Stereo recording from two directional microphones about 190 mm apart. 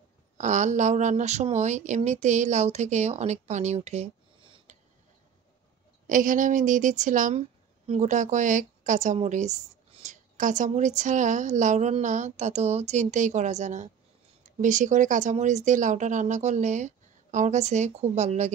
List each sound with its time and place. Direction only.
0.4 s speech: 40° right (ahead or behind)
4.7 s tick-tock: 35° right (ahead or behind)
6.0 s a woman's voice: 45° right (ahead or behind)